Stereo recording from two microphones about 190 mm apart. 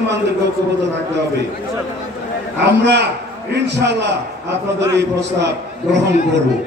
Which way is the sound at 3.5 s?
65° right (ahead or behind).